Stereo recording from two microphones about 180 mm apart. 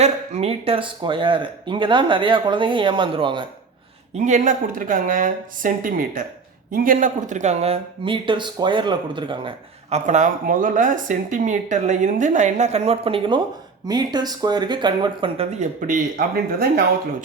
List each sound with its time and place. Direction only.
0.0 s speech: 35° right (ahead or behind)
4.1 s speech: 45° right (ahead or behind); by 9.5 s 25° right (ahead or behind)
9.9 s speech: 40° right (ahead or behind)
15.5 s speech: 45° right (ahead or behind)